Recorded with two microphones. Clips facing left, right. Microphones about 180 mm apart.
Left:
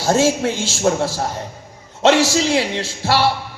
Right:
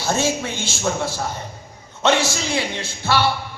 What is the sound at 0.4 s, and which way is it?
Speech, 40° left (ahead or behind).